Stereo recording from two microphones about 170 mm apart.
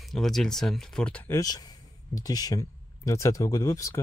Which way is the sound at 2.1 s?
20° left (ahead or behind).